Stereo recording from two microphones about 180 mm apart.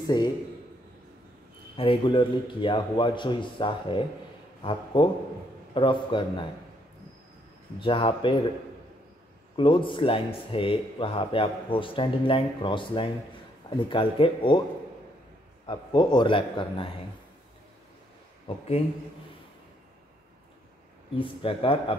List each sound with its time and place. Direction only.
0.0 s a man's voice: 25° left (ahead or behind)
1.8 s a man's voice: 30° left (ahead or behind)
7.8 s a man's voice: 30° left (ahead or behind)
9.6 s a man's voice: 30° left (ahead or behind)
15.6 s a man's voice: 25° left (ahead or behind)
21.2 s a man's voice: 30° left (ahead or behind)